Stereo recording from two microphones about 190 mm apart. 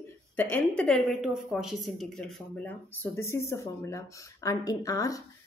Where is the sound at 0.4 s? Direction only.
10° left (ahead or behind).